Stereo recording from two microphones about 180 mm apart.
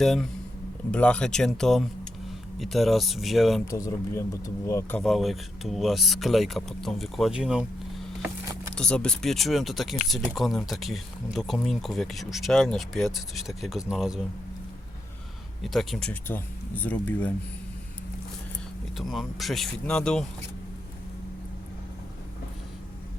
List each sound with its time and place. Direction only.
0.0 s speech: centre (ahead or behind)
3.7 s speech: 20° left (ahead or behind)
5.0 s speech: centre (ahead or behind)
15.6 s speech: centre (ahead or behind)
18.9 s speech: centre (ahead or behind)